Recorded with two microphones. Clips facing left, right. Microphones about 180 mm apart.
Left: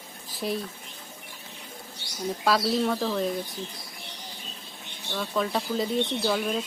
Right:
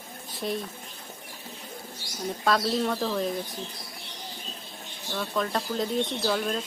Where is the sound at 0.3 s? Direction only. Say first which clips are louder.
Left 1 dB; centre (ahead or behind).